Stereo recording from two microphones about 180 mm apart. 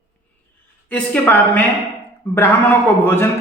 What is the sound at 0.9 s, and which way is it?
Speech, 10° left (ahead or behind).